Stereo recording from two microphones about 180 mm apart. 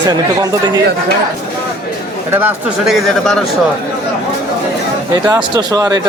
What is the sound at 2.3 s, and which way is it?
Speech, 10° right (ahead or behind).